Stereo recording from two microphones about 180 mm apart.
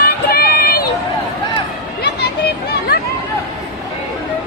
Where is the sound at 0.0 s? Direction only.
60° left (ahead or behind).